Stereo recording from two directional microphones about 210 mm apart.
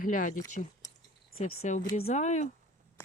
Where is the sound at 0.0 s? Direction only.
40° left (ahead or behind).